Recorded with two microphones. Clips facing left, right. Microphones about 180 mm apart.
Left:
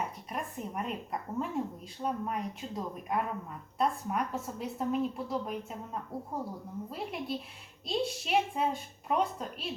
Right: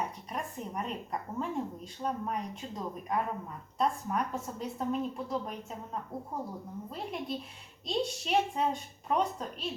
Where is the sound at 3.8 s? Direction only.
5° left (ahead or behind).